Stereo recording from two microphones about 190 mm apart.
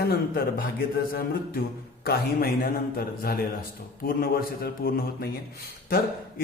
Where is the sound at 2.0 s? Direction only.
55° left (ahead or behind).